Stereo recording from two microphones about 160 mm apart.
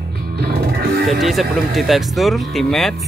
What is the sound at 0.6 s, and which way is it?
Music, 75° right (ahead or behind).